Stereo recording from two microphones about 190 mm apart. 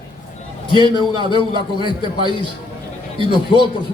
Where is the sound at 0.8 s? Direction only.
25° right (ahead or behind).